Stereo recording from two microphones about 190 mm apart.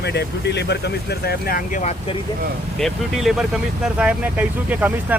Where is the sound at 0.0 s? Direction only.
65° left (ahead or behind); by 2.1 s 35° left (ahead or behind).